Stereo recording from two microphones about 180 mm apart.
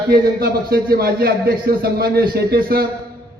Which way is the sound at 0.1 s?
55° right (ahead or behind).